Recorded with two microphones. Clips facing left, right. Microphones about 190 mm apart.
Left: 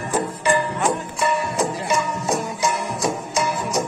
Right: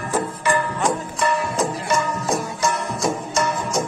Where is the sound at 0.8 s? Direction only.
5° left (ahead or behind).